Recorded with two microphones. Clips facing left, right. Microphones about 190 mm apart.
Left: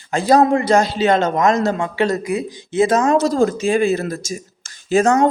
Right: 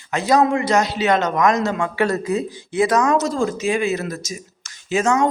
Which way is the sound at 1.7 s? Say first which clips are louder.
Left 1 dB; 20° left (ahead or behind).